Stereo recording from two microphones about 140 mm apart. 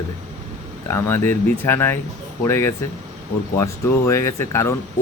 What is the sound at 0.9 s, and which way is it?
Speech, 15° left (ahead or behind).